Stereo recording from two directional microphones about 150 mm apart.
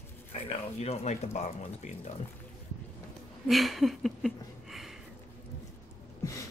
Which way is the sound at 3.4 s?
Centre (ahead or behind).